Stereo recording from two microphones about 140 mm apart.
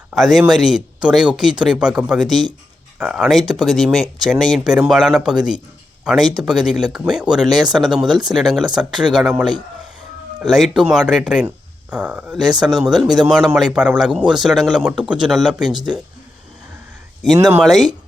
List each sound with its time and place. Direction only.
0.1 s speech: centre (ahead or behind)
10.4 s speech: centre (ahead or behind)
15.7 s speech: 30° right (ahead or behind)
17.6 s speech: centre (ahead or behind)